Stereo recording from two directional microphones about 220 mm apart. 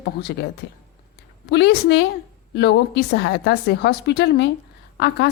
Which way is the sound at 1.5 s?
50° left (ahead or behind).